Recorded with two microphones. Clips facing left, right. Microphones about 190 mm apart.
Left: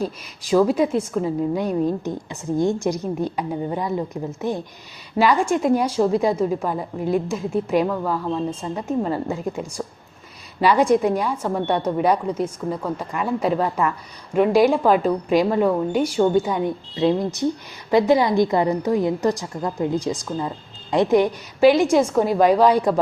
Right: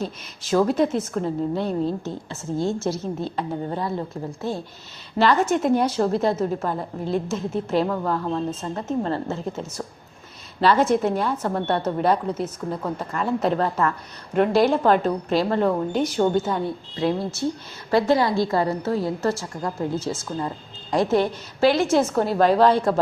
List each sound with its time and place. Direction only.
0.5 s a woman's voice: 5° left (ahead or behind)
5.4 s speech: 5° right (ahead or behind)
5.7 s a woman's voice: 10° left (ahead or behind)
7.7 s a woman's voice: 10° left (ahead or behind)